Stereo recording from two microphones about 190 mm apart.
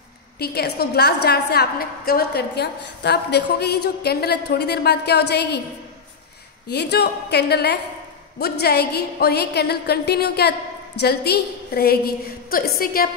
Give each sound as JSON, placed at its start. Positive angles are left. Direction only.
{"t": 0.4, "sound": "a woman's voice", "side_deg": 55}
{"t": 6.7, "sound": "a woman's voice", "side_deg": 60}